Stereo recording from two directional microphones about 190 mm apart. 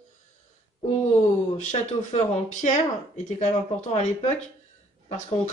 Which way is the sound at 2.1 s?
40° left (ahead or behind).